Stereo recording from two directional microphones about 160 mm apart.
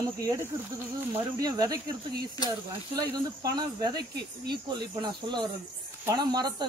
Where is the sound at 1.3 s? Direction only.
25° right (ahead or behind).